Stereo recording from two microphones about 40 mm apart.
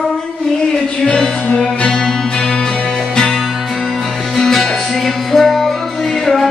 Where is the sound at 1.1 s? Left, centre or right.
Left.